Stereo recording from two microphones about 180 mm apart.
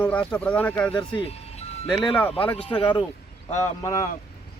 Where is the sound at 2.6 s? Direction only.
30° left (ahead or behind).